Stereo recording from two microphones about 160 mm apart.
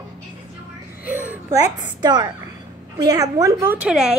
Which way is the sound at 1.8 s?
25° right (ahead or behind).